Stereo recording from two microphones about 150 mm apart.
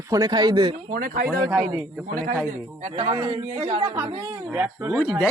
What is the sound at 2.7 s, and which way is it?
A man's voice, 45° right (ahead or behind).